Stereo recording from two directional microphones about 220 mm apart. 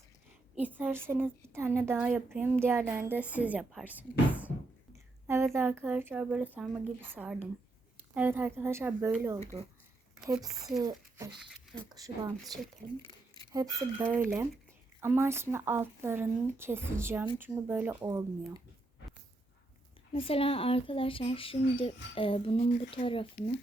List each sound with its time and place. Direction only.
0.6 s a woman's voice: 10° right (ahead or behind)
5.2 s a sound: 15° right (ahead or behind)
5.5 s a woman's voice: 10° right (ahead or behind)
11.4 s speech: 5° left (ahead or behind)
11.9 s a woman's voice: 15° right (ahead or behind)
13.3 s a woman's voice: 15° right (ahead or behind)
20.1 s speech: 25° left (ahead or behind)